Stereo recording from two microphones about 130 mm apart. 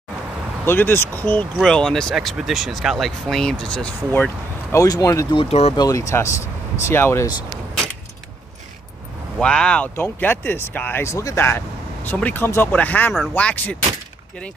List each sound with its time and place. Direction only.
0.7 s speech: 15° left (ahead or behind)
4.7 s speech: 30° left (ahead or behind)
5.3 s speech: 50° left (ahead or behind)
5.8 s speech: 25° left (ahead or behind)
9.4 s speech: 5° left (ahead or behind)